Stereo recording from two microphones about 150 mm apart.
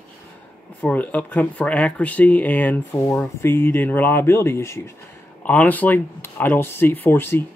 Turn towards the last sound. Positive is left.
turn(degrees=15)  # may be behind; listen again after turning